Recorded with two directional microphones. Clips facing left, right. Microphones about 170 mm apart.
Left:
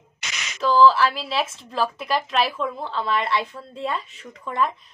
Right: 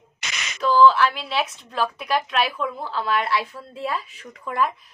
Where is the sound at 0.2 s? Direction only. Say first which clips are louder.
Right 1 dB; 55° right (ahead or behind).